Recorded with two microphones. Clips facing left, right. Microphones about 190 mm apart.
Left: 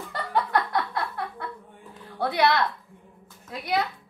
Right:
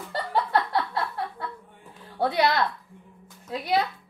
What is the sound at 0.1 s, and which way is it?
Chuckle, 30° right (ahead or behind).